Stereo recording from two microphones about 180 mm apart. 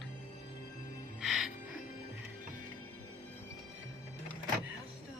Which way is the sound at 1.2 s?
Centre (ahead or behind).